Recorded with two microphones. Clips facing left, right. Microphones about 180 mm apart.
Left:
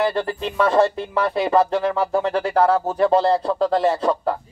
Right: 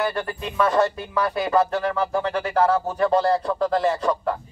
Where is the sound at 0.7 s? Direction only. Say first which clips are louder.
Left 4 dB; 30° left (ahead or behind).